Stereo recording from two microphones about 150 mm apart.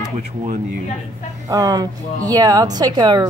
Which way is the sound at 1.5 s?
25° right (ahead or behind).